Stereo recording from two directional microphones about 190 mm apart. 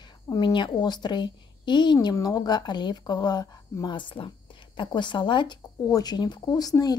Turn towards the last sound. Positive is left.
turn(degrees=20)  # may be behind; listen again after turning